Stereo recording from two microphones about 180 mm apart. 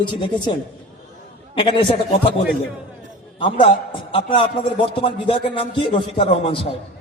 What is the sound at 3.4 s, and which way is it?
A man's voice, 25° left (ahead or behind).